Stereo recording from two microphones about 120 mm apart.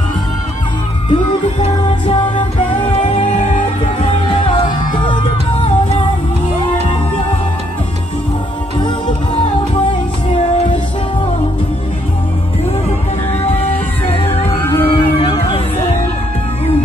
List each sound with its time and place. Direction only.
1.1 s speech: 45° left (ahead or behind)
2.0 s music: 50° left (ahead or behind)
4.3 s music: 45° left (ahead or behind)
13.4 s music: 60° left (ahead or behind)
14.6 s a sound: 20° left (ahead or behind)
14.9 s a sound: 45° left (ahead or behind)